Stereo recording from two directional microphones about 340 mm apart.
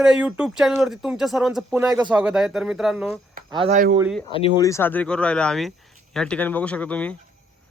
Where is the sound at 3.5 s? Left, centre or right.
Centre.